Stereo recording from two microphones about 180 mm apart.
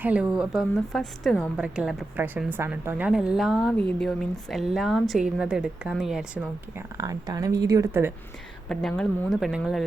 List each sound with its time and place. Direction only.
0.0 s a woman's voice: 5° right (ahead or behind)
6.9 s speech: 20° right (ahead or behind)
8.7 s a woman's voice: 5° left (ahead or behind)